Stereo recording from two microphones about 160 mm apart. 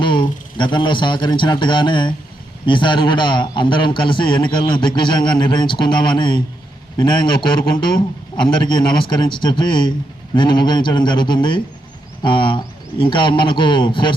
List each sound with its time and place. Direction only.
0.0 s a man's voice: 30° left (ahead or behind)